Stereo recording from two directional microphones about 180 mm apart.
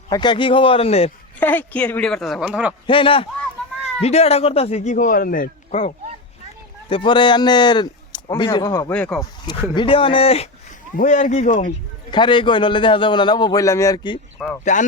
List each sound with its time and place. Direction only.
0.1 s a man's voice: 25° left (ahead or behind)
1.4 s a woman's voice: 10° left (ahead or behind); by 2.7 s 5° right (ahead or behind)
2.8 s a man's voice: 30° left (ahead or behind); by 5.8 s 50° left (ahead or behind)
6.8 s a man's voice: 30° left (ahead or behind)
8.9 s speech: 5° left (ahead or behind)
9.5 s a man's voice: 25° left (ahead or behind)
10.9 s speech: 45° left (ahead or behind)
12.1 s a man's voice: 25° left (ahead or behind)
14.3 s speech: 5° left (ahead or behind)
14.6 s speech: 45° left (ahead or behind)